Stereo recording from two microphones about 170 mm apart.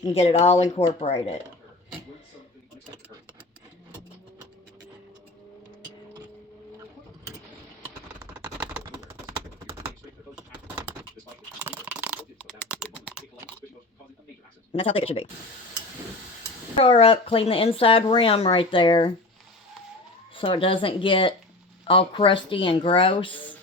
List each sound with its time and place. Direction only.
0.0 s speech: 35° left (ahead or behind)
10.3 s a sound: 10° right (ahead or behind)
12.7 s typing: 5° right (ahead or behind)
14.7 s speech: 35° left (ahead or behind)
16.7 s speech: 35° left (ahead or behind)
20.3 s speech: 30° left (ahead or behind)